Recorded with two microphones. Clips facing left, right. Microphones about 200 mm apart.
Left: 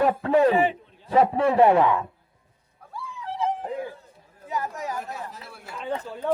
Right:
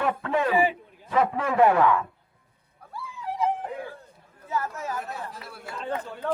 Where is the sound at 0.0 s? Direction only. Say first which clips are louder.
Left 6 dB; 35° left (ahead or behind).